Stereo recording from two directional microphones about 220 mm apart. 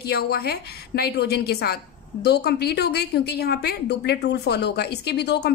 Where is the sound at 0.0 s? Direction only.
45° left (ahead or behind).